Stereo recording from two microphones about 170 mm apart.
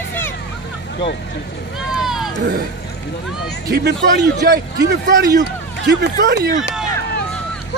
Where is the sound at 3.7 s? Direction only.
80° right.